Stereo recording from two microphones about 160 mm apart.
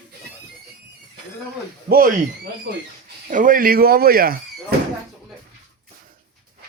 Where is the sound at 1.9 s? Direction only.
65° right (ahead or behind).